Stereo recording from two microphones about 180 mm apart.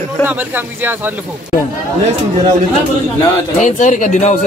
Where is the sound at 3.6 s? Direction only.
45° left (ahead or behind).